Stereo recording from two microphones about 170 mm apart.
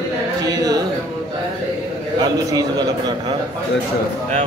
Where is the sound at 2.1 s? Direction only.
20° right (ahead or behind).